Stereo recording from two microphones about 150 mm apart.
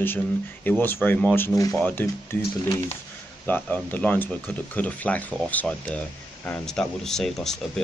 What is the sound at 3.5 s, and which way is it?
Speech, 10° left (ahead or behind).